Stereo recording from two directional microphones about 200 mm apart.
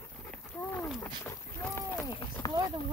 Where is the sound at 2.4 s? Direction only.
5° left (ahead or behind).